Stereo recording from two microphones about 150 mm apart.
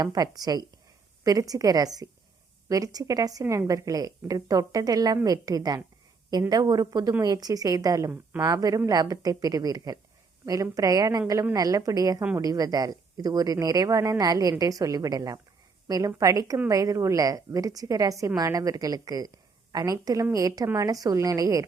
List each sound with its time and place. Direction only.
0.0 s a woman's voice: 25° right (ahead or behind)